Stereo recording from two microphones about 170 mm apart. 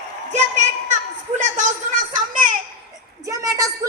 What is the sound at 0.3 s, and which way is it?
A woman's voice, 45° right (ahead or behind).